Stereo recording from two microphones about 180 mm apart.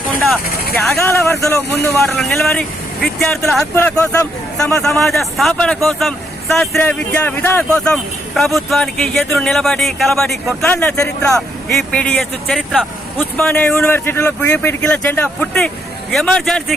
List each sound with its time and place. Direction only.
0.8 s speech: 5° left (ahead or behind)
2.0 s speech: centre (ahead or behind)
3.8 s speech: 15° left (ahead or behind)
4.8 s speech: centre (ahead or behind); by 11.3 s 15° left (ahead or behind)
11.3 s speech: centre (ahead or behind)